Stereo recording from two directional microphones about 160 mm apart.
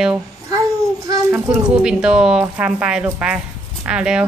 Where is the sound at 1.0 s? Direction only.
20° right (ahead or behind).